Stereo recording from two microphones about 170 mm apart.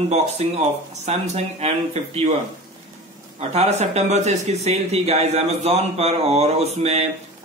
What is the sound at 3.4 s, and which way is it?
Speech, 40° right (ahead or behind).